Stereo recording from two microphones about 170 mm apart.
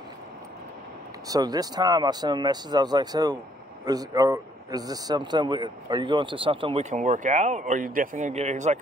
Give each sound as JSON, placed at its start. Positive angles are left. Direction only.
{"t": 1.3, "sound": "a man's voice", "side_deg": -20}